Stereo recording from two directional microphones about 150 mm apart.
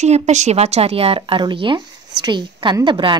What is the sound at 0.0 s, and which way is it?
A woman's voice, 50° right (ahead or behind).